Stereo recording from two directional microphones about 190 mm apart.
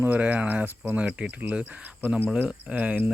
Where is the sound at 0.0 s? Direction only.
10° right (ahead or behind).